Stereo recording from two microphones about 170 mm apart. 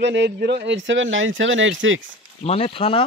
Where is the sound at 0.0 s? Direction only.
90° right.